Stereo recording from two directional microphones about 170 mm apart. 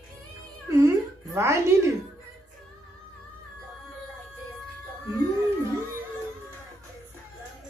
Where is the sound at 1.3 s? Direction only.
15° right (ahead or behind).